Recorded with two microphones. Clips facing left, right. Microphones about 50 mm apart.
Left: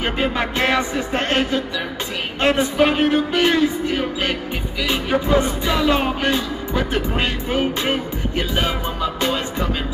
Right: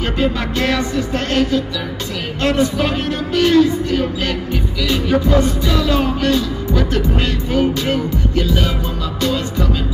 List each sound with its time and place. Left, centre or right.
0.0 s music: left